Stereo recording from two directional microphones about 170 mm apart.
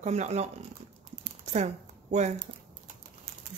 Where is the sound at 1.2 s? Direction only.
40° right (ahead or behind).